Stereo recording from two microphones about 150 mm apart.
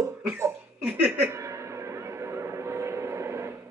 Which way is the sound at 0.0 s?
15° right (ahead or behind).